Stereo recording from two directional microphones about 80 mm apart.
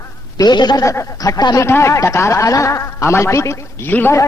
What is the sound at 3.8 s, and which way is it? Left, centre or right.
Speech, left.